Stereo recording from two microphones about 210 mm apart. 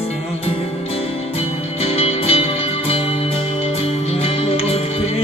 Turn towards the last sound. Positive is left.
turn(degrees=25)  # may be behind; listen again after turning